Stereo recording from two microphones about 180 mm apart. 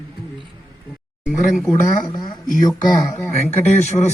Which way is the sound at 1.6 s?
20° left (ahead or behind).